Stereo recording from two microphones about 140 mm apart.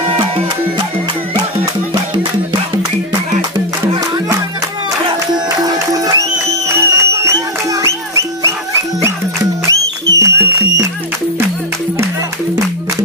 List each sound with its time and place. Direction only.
5.7 s music: 25° right (ahead or behind)
9.7 s music: 25° right (ahead or behind)